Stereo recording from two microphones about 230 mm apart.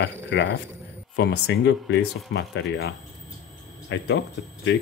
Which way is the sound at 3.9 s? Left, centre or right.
Left.